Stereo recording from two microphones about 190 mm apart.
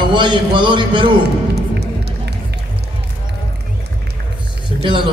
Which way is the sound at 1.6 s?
60° right (ahead or behind).